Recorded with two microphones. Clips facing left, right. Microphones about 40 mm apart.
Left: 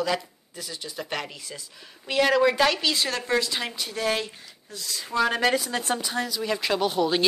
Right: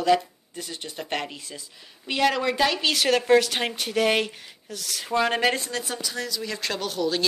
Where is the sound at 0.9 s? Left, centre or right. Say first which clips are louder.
Right 2 dB; centre.